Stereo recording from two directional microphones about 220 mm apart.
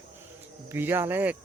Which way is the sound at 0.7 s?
10° right (ahead or behind).